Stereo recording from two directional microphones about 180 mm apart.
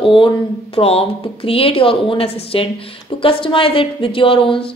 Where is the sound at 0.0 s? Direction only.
30° left (ahead or behind).